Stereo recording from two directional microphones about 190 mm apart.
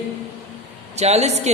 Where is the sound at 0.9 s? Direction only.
35° right (ahead or behind).